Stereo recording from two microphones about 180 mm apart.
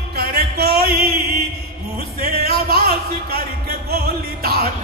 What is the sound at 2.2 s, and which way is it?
Music, 60° right (ahead or behind).